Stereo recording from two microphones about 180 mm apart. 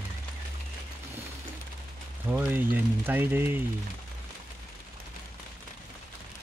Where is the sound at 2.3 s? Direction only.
10° right (ahead or behind).